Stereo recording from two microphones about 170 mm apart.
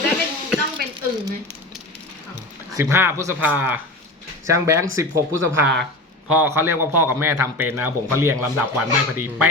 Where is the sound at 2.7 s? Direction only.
15° right (ahead or behind).